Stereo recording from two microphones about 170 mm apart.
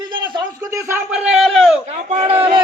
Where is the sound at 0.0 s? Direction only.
25° right (ahead or behind); by 1.8 s centre (ahead or behind).